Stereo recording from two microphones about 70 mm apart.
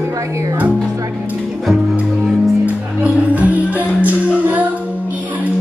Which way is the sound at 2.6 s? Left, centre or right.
Right.